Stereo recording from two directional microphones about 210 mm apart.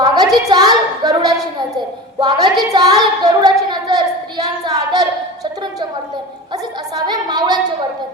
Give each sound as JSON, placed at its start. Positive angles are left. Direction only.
{"t": 0.0, "sound": "a sound", "side_deg": -20}
{"t": 0.4, "sound": "a woman's voice", "side_deg": -20}
{"t": 6.9, "sound": "a woman's voice", "side_deg": -20}